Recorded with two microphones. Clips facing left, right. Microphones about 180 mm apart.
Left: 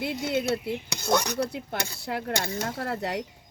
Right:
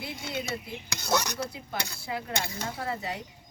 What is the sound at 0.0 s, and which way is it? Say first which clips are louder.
Speech: left 8 dB; 70° left (ahead or behind).